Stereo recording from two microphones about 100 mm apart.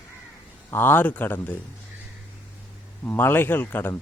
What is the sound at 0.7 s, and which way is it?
Speech, 20° left (ahead or behind).